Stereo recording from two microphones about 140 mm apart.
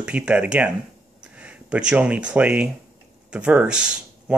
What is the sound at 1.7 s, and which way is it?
Speech, 10° right (ahead or behind).